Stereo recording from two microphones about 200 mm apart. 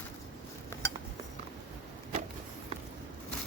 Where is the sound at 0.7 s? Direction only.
10° left (ahead or behind).